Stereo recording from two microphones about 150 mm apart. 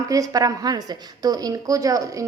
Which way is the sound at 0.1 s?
25° right (ahead or behind).